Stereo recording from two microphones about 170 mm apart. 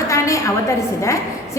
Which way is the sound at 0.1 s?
20° left (ahead or behind).